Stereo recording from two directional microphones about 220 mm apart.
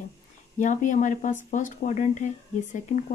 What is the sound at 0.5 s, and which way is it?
Speech, 35° left (ahead or behind).